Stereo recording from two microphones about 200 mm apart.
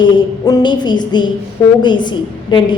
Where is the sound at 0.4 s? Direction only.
20° left (ahead or behind).